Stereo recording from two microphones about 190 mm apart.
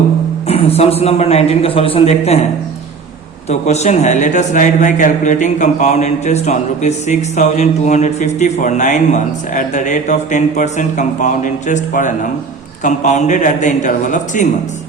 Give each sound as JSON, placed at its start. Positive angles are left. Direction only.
{"t": 0.4, "sound": "a man's voice", "side_deg": 35}
{"t": 3.5, "sound": "a man's voice", "side_deg": 35}